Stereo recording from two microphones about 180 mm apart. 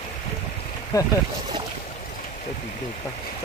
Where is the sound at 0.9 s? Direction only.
20° left (ahead or behind).